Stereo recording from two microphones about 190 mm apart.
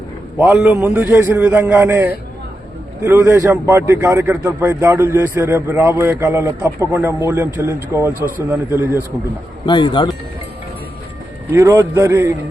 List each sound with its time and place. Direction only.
0.3 s a man's voice: 15° right (ahead or behind)
9.6 s speech: 25° left (ahead or behind)
11.6 s a man's voice: 15° right (ahead or behind)